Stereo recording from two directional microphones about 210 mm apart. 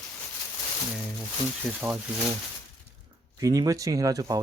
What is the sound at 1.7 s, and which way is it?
Speech, 5° left (ahead or behind).